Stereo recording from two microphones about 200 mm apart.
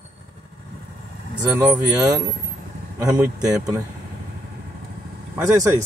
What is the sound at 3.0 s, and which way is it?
Speech, 15° right (ahead or behind).